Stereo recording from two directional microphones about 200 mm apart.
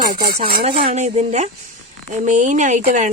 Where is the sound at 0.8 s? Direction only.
35° right (ahead or behind).